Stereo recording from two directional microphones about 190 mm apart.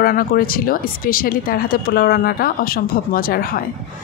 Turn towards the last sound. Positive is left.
turn(degrees=50)  # may be behind; listen again after turning